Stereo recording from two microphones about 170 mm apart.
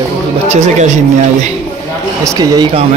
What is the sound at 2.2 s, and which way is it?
Speech, 20° right (ahead or behind).